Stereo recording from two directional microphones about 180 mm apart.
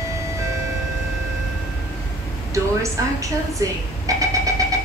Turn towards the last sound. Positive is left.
turn(degrees=-20)  # may be behind; listen again after turning